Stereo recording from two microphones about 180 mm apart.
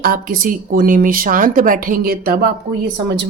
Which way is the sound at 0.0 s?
55° right (ahead or behind).